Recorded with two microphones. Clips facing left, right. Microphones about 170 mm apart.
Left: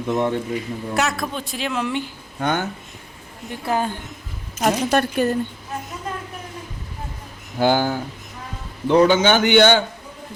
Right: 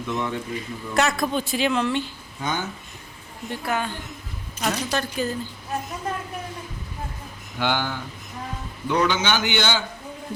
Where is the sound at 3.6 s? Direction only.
35° left (ahead or behind).